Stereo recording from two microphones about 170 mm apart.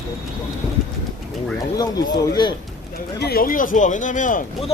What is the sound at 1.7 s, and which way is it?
Speech, 20° left (ahead or behind).